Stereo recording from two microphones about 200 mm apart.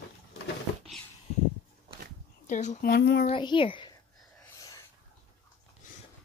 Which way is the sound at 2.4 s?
35° left (ahead or behind).